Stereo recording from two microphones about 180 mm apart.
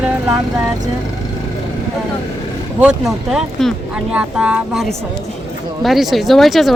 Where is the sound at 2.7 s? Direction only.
5° right (ahead or behind).